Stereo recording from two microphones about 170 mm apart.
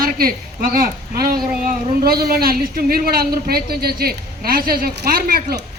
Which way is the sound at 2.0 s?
65° right (ahead or behind).